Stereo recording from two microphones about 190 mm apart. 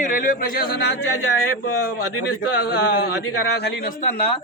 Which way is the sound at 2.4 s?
55° left (ahead or behind).